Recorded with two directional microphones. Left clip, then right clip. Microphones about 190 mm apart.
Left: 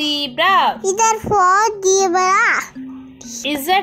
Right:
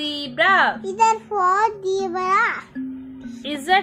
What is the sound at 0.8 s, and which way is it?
A child's voice, 30° left (ahead or behind).